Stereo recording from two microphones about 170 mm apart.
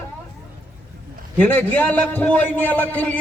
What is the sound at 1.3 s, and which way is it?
A man's voice, 10° left (ahead or behind).